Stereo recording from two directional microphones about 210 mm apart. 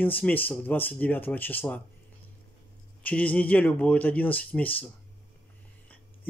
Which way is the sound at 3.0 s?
5° left (ahead or behind).